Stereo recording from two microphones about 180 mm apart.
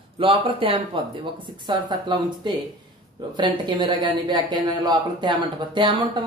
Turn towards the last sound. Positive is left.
turn(degrees=-25)  # may be behind; listen again after turning